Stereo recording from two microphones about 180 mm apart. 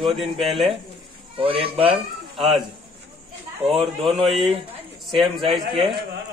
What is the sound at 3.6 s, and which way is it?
Speech, 5° right (ahead or behind).